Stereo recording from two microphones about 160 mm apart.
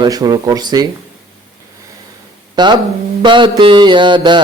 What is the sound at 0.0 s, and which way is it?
Speech, 25° right (ahead or behind).